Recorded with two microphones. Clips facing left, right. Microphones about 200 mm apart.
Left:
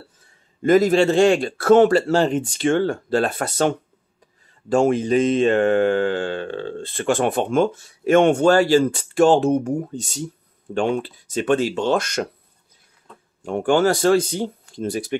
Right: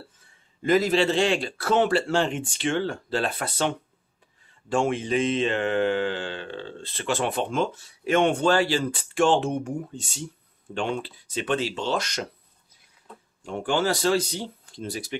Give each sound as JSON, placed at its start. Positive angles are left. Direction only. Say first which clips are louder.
{"t": 0.6, "sound": "speech", "louder": "left 6 dB", "side_deg": 45}
{"t": 13.4, "sound": "speech", "louder": "left 7 dB", "side_deg": 50}